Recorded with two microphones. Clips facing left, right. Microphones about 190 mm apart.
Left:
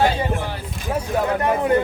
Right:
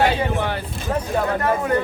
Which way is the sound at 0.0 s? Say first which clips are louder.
Right 1 dB; 65° right (ahead or behind).